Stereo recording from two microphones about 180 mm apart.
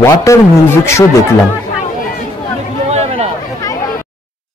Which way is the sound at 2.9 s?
35° right (ahead or behind).